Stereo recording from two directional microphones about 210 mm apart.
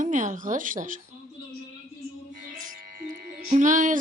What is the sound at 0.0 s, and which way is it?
Speech, 35° right (ahead or behind).